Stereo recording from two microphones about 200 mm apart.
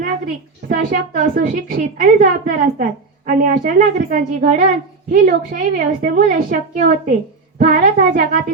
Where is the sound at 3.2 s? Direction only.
45° right (ahead or behind).